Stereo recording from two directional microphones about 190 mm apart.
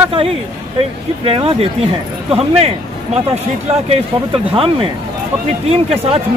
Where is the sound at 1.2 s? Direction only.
30° right (ahead or behind).